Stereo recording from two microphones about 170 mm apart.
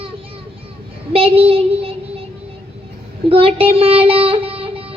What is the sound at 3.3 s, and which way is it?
Child singing, 35° right (ahead or behind).